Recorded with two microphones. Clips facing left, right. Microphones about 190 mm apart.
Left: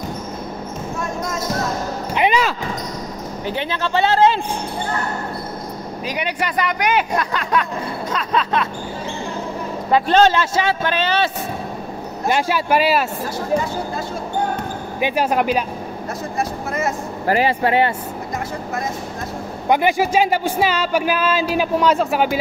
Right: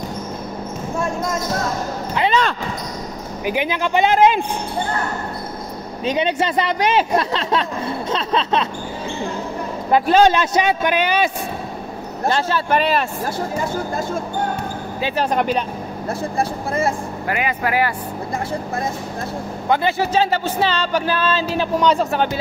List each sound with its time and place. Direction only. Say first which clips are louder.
2.1 s basketball bounce: left 1 dB; 15° left (ahead or behind)
3.4 s a man's voice: right 3 dB; 15° right (ahead or behind)
6.0 s speech: right 6 dB; 25° right (ahead or behind)
10.0 s a man's voice: right 1 dB; 10° right (ahead or behind)
12.3 s speech: left 1 dB; 10° left (ahead or behind)
15.0 s speech: left 1 dB; 15° left (ahead or behind)
16.3 s speech: right 1 dB; 30° right (ahead or behind)
17.3 s speech: left 5 dB; 30° left (ahead or behind)
19.7 s speech: left 2 dB; 15° left (ahead or behind)